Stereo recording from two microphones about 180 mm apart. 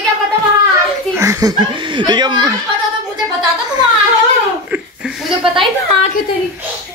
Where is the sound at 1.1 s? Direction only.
15° right (ahead or behind).